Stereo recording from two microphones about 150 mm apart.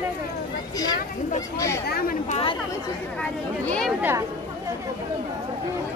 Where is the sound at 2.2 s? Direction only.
40° left (ahead or behind).